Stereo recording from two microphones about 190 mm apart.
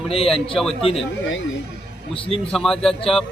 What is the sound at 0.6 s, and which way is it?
Speech, centre (ahead or behind).